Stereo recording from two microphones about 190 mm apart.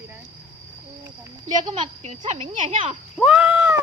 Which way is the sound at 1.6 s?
25° right (ahead or behind).